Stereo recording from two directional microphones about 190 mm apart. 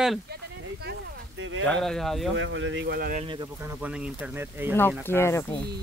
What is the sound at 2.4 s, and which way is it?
Speech, 90° right.